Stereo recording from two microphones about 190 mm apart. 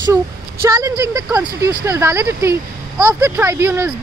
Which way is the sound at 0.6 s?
15° right (ahead or behind).